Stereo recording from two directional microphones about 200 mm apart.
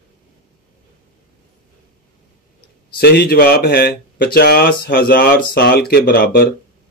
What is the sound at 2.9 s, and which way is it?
Speech, 50° left (ahead or behind).